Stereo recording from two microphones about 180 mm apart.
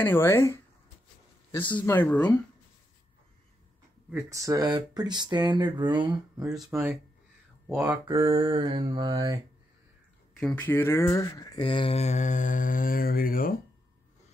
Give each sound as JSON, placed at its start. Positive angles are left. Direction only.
{"t": 0.0, "sound": "speech", "side_deg": 10}
{"t": 1.8, "sound": "speech", "side_deg": 10}
{"t": 4.1, "sound": "mantra", "side_deg": -20}
{"t": 10.4, "sound": "speech", "side_deg": 10}